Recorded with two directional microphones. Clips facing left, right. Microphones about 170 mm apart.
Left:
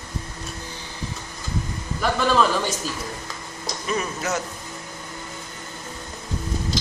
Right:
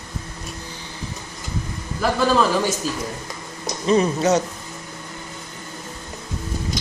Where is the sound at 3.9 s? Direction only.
30° right (ahead or behind).